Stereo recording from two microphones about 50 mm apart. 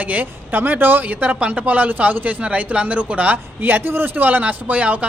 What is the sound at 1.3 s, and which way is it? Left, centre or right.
Speech, right.